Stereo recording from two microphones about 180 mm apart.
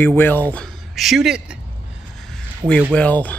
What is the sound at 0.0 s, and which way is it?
Speech, 10° left (ahead or behind).